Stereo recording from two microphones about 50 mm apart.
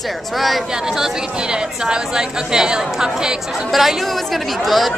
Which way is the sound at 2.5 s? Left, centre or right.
Centre.